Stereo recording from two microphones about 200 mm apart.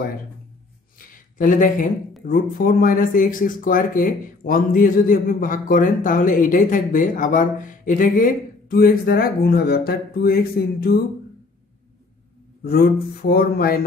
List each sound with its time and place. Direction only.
0.9 s a sound: 45° left (ahead or behind)
2.2 s speech: 45° left (ahead or behind)
12.6 s speech: 50° left (ahead or behind)